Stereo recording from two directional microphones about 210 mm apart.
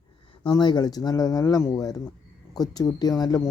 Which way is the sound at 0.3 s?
20° left (ahead or behind).